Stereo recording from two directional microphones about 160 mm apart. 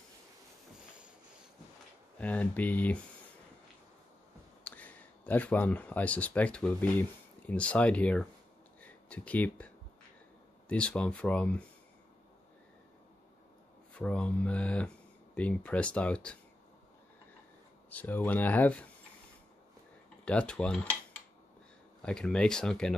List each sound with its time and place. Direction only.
2.1 s speech: 10° left (ahead or behind)
4.6 s speech: 10° left (ahead or behind)
10.7 s speech: 5° left (ahead or behind)
13.9 s speech: 10° left (ahead or behind)
17.8 s speech: 10° left (ahead or behind)
20.2 s speech: 5° left (ahead or behind)
22.0 s speech: 5° left (ahead or behind)